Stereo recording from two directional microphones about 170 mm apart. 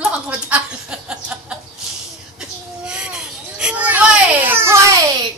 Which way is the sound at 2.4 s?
5° right (ahead or behind).